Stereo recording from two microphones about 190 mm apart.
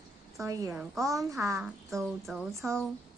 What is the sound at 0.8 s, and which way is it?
Music, centre (ahead or behind).